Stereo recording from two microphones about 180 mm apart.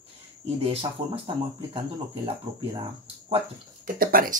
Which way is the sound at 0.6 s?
30° right (ahead or behind).